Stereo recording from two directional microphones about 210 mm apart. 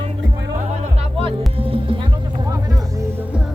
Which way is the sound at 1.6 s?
25° right (ahead or behind).